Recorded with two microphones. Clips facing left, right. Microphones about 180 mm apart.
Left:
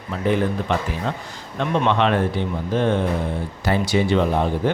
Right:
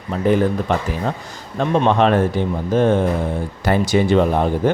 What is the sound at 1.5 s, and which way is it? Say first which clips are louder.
A man's voice: right 4 dB; 40° right (ahead or behind).